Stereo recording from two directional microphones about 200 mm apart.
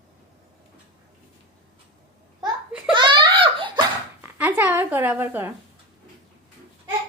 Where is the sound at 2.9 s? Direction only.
25° right (ahead or behind).